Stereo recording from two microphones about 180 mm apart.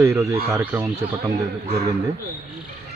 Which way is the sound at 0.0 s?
20° right (ahead or behind).